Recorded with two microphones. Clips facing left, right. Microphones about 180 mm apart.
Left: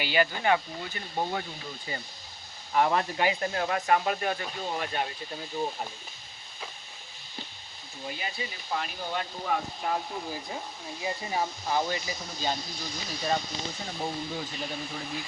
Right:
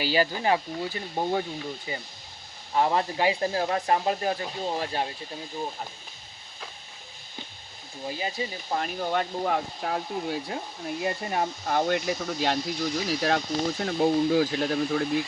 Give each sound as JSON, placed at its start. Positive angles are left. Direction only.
{"t": 0.0, "sound": "speech", "side_deg": -35}
{"t": 1.9, "sound": "speech", "side_deg": -15}
{"t": 8.0, "sound": "speech", "side_deg": -30}